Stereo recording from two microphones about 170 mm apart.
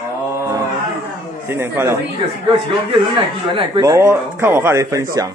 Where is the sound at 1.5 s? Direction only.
15° right (ahead or behind).